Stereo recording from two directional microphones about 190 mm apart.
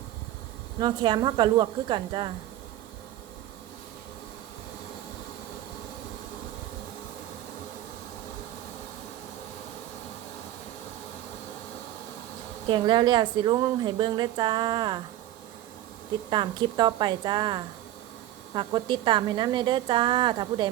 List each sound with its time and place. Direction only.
0.8 s a woman's voice: 25° right (ahead or behind)
12.6 s a woman's voice: 25° right (ahead or behind)
16.3 s a woman's voice: 25° right (ahead or behind)